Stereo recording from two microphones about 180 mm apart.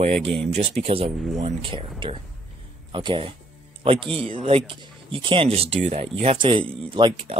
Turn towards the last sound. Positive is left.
turn(degrees=-30)  # may be behind; listen again after turning